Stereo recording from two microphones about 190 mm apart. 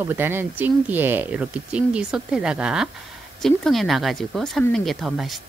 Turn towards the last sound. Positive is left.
turn(degrees=0)  # may be behind; listen again after turning